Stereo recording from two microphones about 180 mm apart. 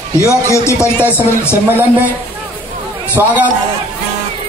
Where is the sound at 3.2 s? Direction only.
15° right (ahead or behind).